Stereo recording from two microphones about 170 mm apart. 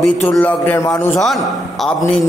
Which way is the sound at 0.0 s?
5° left (ahead or behind).